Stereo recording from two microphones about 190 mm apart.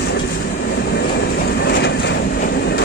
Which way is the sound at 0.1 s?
60° left (ahead or behind).